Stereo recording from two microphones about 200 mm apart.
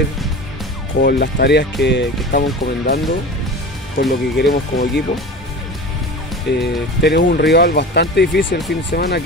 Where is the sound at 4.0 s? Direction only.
55° left (ahead or behind).